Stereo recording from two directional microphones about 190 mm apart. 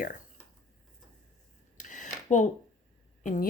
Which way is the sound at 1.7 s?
40° left (ahead or behind).